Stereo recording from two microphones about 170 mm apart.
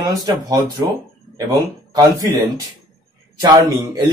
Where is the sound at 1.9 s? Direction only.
20° right (ahead or behind).